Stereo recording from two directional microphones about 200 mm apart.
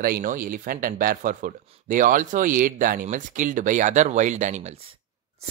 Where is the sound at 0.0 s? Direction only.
45° right (ahead or behind).